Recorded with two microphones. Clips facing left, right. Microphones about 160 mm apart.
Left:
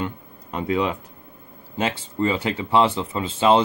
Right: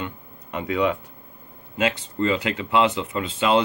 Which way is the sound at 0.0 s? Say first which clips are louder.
Left 4 dB; 40° left (ahead or behind).